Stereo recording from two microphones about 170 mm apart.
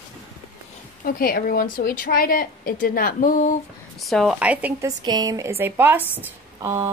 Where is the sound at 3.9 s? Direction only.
Centre (ahead or behind).